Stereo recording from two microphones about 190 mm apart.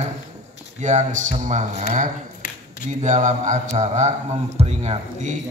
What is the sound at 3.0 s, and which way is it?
A man's voice, 40° right (ahead or behind).